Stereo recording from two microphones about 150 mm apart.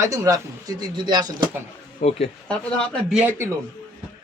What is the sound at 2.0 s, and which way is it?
Speech, 45° left (ahead or behind).